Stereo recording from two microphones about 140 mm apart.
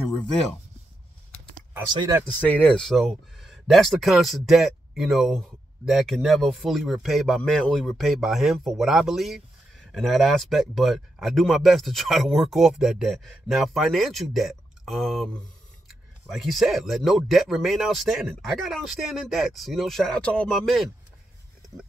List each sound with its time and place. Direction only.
1.7 s speech: 15° right (ahead or behind)
2.2 s speech: 10° left (ahead or behind)